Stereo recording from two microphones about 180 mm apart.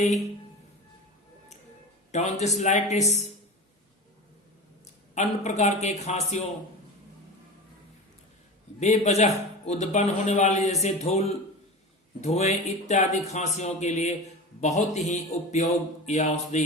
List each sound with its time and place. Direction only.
2.1 s a man's voice: 40° left (ahead or behind)
5.1 s a man's voice: 40° left (ahead or behind)
8.8 s a man's voice: 40° left (ahead or behind)
12.2 s a man's voice: 40° left (ahead or behind)